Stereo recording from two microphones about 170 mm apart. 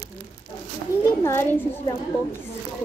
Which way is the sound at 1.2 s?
15° left (ahead or behind).